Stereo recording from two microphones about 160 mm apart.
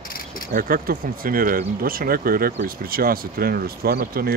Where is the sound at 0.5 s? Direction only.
65° right (ahead or behind).